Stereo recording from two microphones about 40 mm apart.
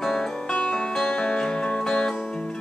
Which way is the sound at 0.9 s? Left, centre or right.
Centre.